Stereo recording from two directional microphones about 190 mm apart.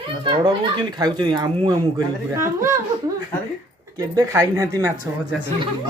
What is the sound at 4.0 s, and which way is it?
Speech, 15° right (ahead or behind).